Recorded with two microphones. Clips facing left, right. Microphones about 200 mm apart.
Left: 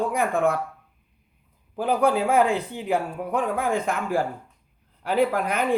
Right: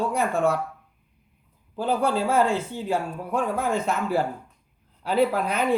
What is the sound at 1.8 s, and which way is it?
Speech, 15° left (ahead or behind).